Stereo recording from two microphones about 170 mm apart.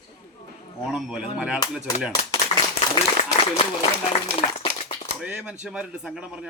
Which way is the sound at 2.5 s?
35° left (ahead or behind).